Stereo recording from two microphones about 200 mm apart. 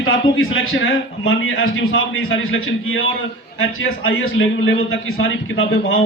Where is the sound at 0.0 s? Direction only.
80° left.